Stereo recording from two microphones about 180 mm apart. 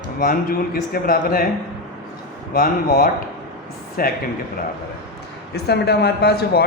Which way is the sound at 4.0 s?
55° left (ahead or behind).